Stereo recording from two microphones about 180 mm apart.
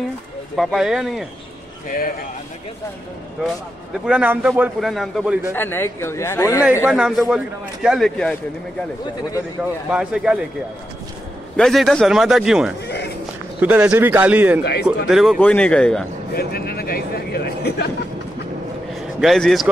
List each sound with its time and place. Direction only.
0.6 s speech: centre (ahead or behind)
4.0 s speech: 5° right (ahead or behind)
5.5 s speech: 10° left (ahead or behind)
6.9 s speech: 5° right (ahead or behind)
9.6 s speech: 5° right (ahead or behind)
11.5 s speech: centre (ahead or behind)
12.8 s music: 70° left (ahead or behind)
13.6 s a man's voice: 10° right (ahead or behind)
14.6 s speech: 65° left (ahead or behind)
15.0 s speech: centre (ahead or behind)
16.3 s a man's voice: 60° left (ahead or behind)
19.2 s speech: centre (ahead or behind)